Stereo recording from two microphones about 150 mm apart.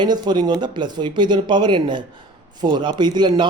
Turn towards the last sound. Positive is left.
turn(degrees=-30)  # may be behind; listen again after turning